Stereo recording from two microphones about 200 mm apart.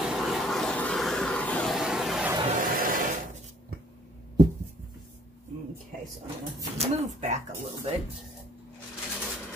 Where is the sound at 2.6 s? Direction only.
45° right (ahead or behind).